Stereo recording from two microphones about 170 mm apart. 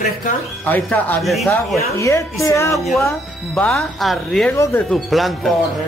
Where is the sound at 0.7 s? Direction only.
10° left (ahead or behind).